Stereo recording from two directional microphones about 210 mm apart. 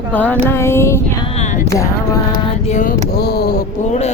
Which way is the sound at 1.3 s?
35° left (ahead or behind).